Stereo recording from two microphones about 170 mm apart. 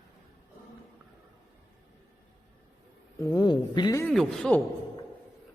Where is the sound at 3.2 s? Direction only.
20° left (ahead or behind).